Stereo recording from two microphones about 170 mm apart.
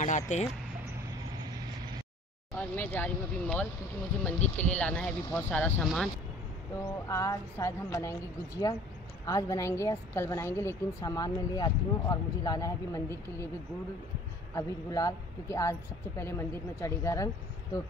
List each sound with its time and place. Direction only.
0.0 s speech: 45° left (ahead or behind)
2.7 s speech: 10° left (ahead or behind)
7.1 s a woman's voice: 20° left (ahead or behind)
14.5 s a woman's voice: 20° left (ahead or behind)